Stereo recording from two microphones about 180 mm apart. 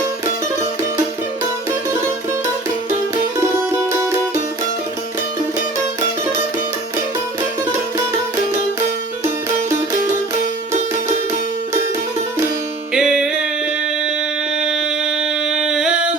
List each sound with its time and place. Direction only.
3.6 s music: 15° right (ahead or behind)
12.9 s music: 5° right (ahead or behind)
14.7 s a sound: centre (ahead or behind)